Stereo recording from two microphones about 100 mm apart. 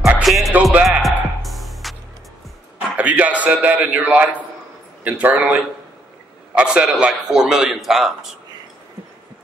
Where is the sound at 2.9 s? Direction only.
15° right (ahead or behind).